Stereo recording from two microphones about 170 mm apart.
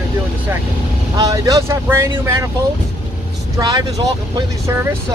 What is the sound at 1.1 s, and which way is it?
Speech, 20° right (ahead or behind).